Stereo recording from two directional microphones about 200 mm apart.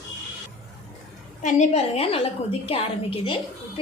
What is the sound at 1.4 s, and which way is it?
A woman's voice, 35° left (ahead or behind).